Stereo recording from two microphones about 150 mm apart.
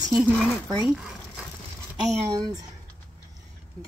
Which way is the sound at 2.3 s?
25° right (ahead or behind).